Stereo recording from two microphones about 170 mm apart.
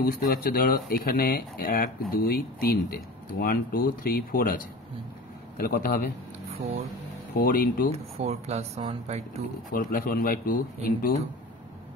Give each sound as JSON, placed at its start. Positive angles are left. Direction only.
{"t": 0.0, "sound": "speech", "side_deg": 60}
{"t": 6.4, "sound": "a sound", "side_deg": -35}
{"t": 7.3, "sound": "speech", "side_deg": 60}
{"t": 7.9, "sound": "speech", "side_deg": -40}
{"t": 9.7, "sound": "speech", "side_deg": 55}